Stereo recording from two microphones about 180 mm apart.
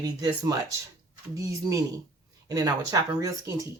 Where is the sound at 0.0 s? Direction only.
20° right (ahead or behind).